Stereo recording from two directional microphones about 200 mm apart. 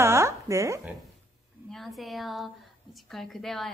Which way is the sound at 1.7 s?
Centre (ahead or behind).